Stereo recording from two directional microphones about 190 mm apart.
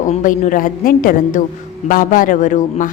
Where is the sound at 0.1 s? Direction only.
40° left (ahead or behind).